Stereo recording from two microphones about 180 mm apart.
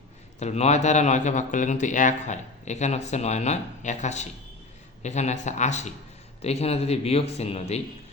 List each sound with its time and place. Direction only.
0.3 s a man's voice: 35° left (ahead or behind)